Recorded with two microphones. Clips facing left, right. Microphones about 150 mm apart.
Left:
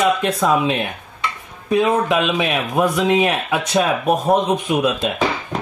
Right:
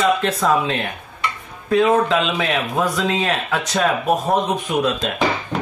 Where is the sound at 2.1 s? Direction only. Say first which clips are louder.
Left 1 dB; 15° left (ahead or behind).